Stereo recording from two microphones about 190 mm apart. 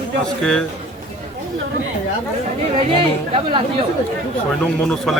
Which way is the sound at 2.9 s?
30° right (ahead or behind).